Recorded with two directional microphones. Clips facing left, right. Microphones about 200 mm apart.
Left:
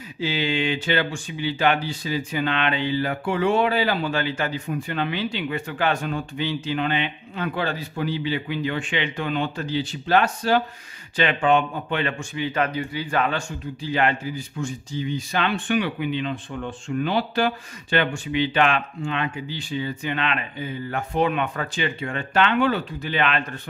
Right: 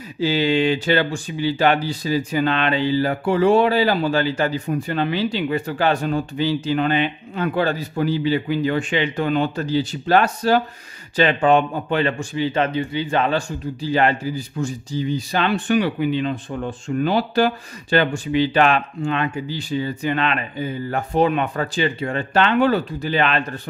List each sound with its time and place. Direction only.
0.2 s speech: 40° right (ahead or behind)